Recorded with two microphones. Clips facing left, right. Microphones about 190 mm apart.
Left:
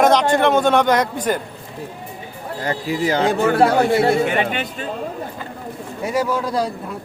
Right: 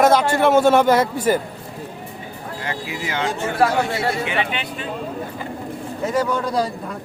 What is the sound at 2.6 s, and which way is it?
Speech, 35° left (ahead or behind).